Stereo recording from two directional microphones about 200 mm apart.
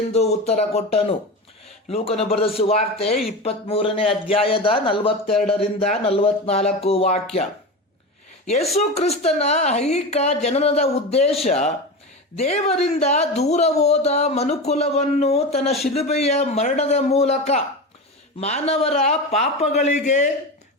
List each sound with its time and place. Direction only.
0.1 s speech: 30° left (ahead or behind)
8.4 s speech: 30° left (ahead or behind)